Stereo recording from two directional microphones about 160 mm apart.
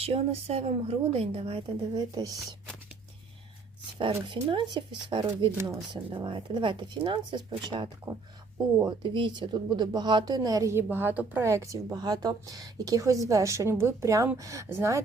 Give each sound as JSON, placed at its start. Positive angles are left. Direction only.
{"t": 0.0, "sound": "a woman's voice", "side_deg": -40}
{"t": 3.9, "sound": "a woman's voice", "side_deg": -30}
{"t": 8.1, "sound": "speech", "side_deg": -20}
{"t": 9.0, "sound": "speech", "side_deg": -30}